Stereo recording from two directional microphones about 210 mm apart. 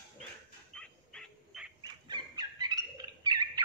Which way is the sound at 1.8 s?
20° right (ahead or behind).